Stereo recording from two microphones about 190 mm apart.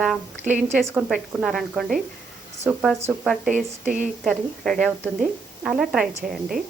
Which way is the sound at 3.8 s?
40° right (ahead or behind).